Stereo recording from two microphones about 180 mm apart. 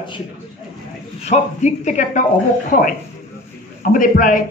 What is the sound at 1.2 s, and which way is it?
A man's voice, 40° left (ahead or behind).